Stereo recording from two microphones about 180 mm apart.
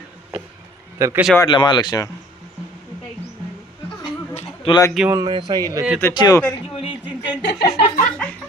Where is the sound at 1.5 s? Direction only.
25° left (ahead or behind).